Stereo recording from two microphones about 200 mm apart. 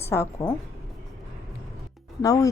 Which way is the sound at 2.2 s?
15° left (ahead or behind).